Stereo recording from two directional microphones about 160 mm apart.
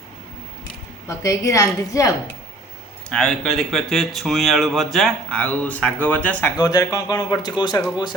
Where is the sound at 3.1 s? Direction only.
5° left (ahead or behind).